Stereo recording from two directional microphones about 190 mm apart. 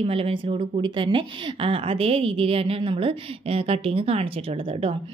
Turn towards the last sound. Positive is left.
turn(degrees=-30)  # may be behind; listen again after turning